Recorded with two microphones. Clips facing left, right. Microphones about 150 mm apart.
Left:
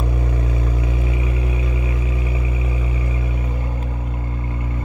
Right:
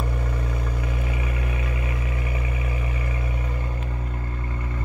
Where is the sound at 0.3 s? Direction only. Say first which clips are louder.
Left 5 dB; 25° left (ahead or behind).